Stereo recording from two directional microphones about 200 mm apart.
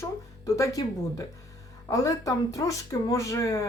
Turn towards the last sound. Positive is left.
turn(degrees=15)  # may be behind; listen again after turning